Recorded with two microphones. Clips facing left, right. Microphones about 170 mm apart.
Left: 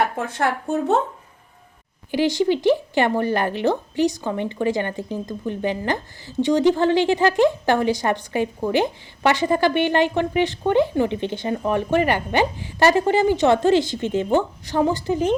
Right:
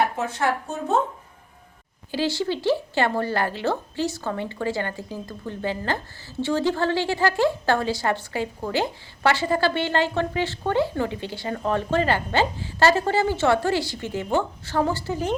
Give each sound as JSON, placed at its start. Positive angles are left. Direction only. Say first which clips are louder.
{"t": 2.0, "sound": "speech", "louder": "left 6 dB", "side_deg": 15}